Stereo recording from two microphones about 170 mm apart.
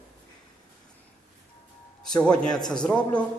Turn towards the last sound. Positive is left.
turn(degrees=5)  # may be behind; listen again after turning